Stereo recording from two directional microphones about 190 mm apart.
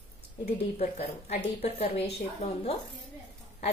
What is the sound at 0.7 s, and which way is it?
A woman's voice, 30° left (ahead or behind).